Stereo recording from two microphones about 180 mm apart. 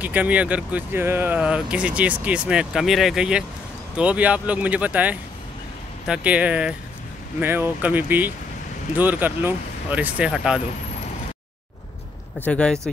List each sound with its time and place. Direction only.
0.0 s speech: 10° right (ahead or behind)
12.4 s speech: 5° left (ahead or behind)